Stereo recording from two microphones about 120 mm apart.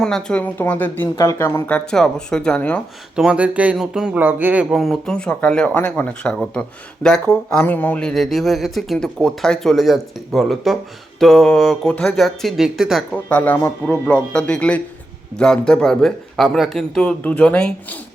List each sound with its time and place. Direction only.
0.0 s speech: 5° left (ahead or behind)
1.1 s speech: 30° left (ahead or behind); by 2.8 s 10° left (ahead or behind)
3.2 s speech: 10° right (ahead or behind)
4.2 s speech: 15° right (ahead or behind)
4.7 s a man's voice: centre (ahead or behind)
13.2 s speech: 15° left (ahead or behind)